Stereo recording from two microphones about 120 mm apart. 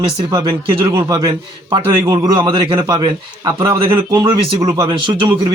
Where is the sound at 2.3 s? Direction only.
45° right (ahead or behind).